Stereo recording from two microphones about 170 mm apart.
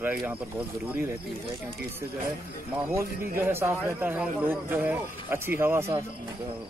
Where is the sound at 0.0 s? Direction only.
10° right (ahead or behind).